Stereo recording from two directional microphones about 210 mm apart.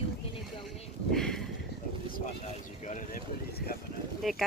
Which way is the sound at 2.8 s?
35° left (ahead or behind).